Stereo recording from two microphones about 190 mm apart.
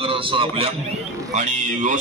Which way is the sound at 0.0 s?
30° right (ahead or behind).